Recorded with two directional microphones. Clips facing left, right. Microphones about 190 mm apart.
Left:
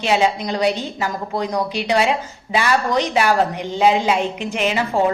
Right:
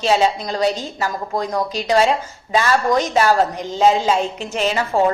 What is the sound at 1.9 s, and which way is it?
Speech, 40° right (ahead or behind).